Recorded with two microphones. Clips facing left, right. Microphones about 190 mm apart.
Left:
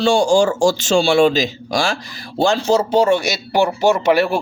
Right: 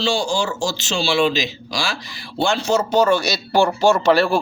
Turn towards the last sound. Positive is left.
turn(degrees=20)  # may be behind; listen again after turning